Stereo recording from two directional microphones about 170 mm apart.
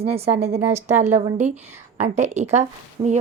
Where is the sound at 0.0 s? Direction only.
35° right (ahead or behind).